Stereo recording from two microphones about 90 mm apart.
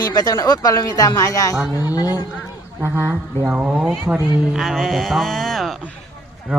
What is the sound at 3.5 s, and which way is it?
Speech, 15° right (ahead or behind).